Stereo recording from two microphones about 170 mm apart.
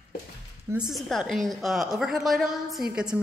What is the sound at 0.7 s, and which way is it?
A woman's voice, 5° right (ahead or behind).